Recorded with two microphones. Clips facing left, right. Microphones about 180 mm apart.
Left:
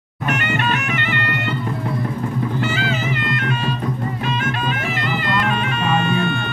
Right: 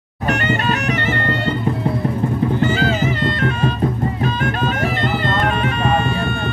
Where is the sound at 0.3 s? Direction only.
35° right (ahead or behind).